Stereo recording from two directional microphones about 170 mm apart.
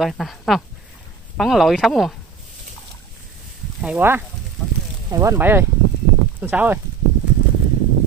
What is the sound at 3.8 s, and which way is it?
Speech, 10° right (ahead or behind).